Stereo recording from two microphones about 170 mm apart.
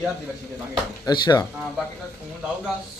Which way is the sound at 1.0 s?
25° left (ahead or behind).